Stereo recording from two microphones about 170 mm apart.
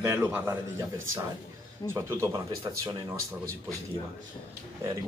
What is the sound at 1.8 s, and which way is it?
Speech, 15° right (ahead or behind).